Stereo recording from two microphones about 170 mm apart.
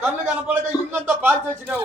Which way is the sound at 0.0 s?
10° right (ahead or behind).